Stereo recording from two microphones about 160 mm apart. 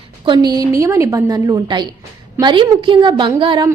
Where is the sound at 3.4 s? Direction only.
30° right (ahead or behind).